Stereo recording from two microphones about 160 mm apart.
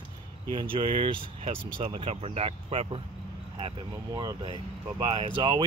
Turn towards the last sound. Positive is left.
turn(degrees=-25)  # may be behind; listen again after turning